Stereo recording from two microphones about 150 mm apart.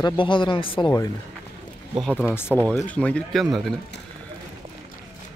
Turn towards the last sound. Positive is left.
turn(degrees=0)  # may be behind; listen again after turning